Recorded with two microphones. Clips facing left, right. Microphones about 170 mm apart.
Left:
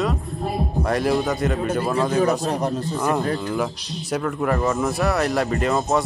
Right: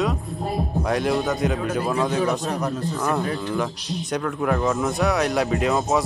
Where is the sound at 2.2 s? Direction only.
35° left (ahead or behind).